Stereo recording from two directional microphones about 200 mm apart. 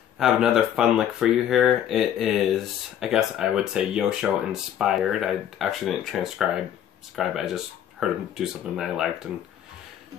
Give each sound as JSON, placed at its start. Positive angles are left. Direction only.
{"t": 0.2, "sound": "speech", "side_deg": 0}